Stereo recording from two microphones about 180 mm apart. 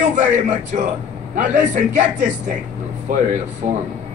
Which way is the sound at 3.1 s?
50° right (ahead or behind).